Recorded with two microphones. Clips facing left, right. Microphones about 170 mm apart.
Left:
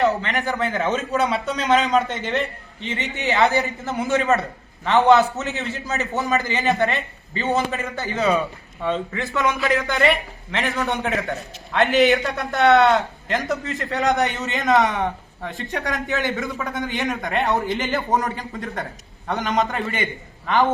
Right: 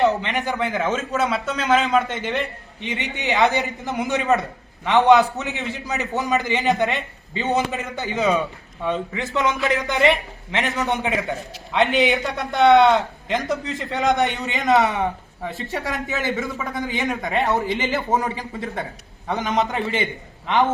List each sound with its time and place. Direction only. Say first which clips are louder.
0.0 s a man's voice: right 1 dB; 20° right (ahead or behind)
11.0 s a man's voice: even; 5° right (ahead or behind)
11.9 s a man's voice: left 3 dB; centre (ahead or behind)